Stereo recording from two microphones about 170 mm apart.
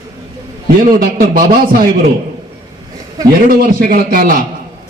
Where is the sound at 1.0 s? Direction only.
55° right (ahead or behind).